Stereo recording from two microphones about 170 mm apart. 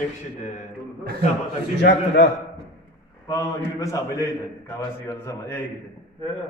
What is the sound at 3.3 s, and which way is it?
Speech, 15° left (ahead or behind).